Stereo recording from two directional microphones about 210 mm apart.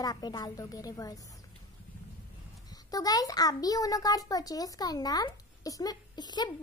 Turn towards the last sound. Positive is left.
turn(degrees=20)  # may be behind; listen again after turning